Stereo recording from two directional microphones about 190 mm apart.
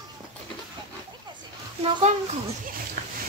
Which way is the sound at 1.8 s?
35° right (ahead or behind).